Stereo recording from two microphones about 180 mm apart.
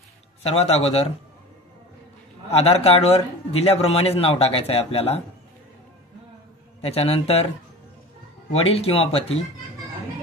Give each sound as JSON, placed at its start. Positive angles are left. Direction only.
{"t": 0.4, "sound": "a man's voice", "side_deg": 35}
{"t": 2.5, "sound": "a man's voice", "side_deg": 35}
{"t": 6.8, "sound": "a man's voice", "side_deg": 35}
{"t": 8.5, "sound": "a man's voice", "side_deg": 35}